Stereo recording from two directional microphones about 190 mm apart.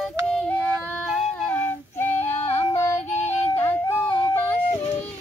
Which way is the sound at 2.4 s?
15° left (ahead or behind).